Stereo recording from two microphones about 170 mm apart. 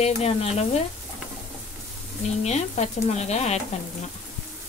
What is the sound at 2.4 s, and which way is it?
Speech, 40° left (ahead or behind).